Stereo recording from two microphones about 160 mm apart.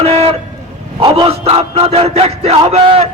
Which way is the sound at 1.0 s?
35° right (ahead or behind).